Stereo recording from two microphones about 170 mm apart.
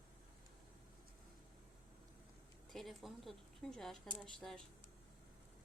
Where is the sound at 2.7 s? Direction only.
Centre (ahead or behind).